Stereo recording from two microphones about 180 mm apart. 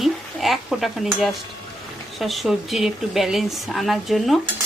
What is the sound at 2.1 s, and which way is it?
Speech, centre (ahead or behind).